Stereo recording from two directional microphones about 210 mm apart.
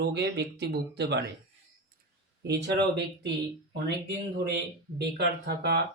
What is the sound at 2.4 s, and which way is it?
Speech, 50° right (ahead or behind).